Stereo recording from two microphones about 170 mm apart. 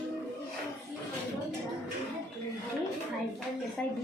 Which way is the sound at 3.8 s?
5° left (ahead or behind).